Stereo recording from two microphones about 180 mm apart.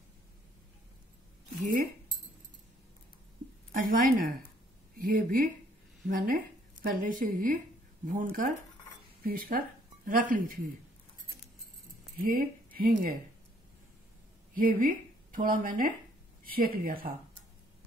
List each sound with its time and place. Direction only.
3.7 s a woman's voice: 50° right (ahead or behind)
12.2 s speech: 50° right (ahead or behind)
14.5 s speech: 50° right (ahead or behind)